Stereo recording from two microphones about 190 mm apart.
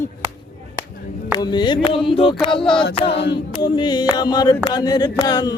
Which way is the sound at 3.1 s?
65° left (ahead or behind).